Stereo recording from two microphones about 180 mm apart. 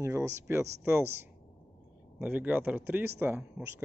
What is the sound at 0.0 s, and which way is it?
Speech, 15° right (ahead or behind).